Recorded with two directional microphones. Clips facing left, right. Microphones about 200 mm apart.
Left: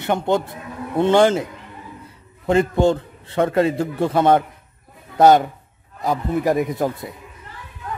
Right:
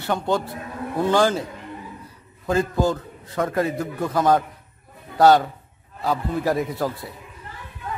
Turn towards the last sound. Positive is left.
turn(degrees=20)  # may be behind; listen again after turning